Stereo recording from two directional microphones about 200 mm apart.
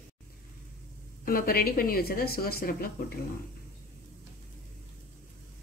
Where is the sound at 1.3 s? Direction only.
45° left (ahead or behind).